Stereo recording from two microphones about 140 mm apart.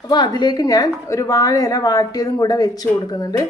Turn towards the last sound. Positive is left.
turn(degrees=25)  # may be behind; listen again after turning